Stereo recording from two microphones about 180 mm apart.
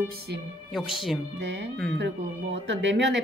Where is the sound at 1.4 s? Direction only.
80° right.